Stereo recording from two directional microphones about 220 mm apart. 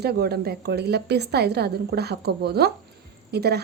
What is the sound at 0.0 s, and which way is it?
Speech, 45° right (ahead or behind).